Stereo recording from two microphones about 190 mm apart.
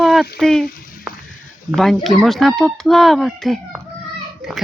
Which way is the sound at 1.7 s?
Centre (ahead or behind).